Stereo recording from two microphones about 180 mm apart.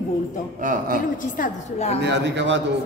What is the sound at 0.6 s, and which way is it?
Speech, 50° right (ahead or behind).